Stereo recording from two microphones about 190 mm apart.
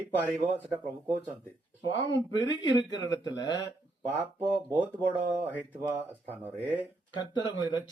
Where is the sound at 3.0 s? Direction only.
20° left (ahead or behind).